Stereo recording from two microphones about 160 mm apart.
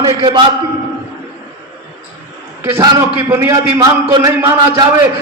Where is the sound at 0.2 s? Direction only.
30° right (ahead or behind).